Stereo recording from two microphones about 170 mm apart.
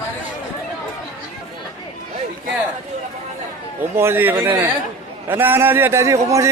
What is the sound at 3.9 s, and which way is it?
A man's voice, 15° right (ahead or behind).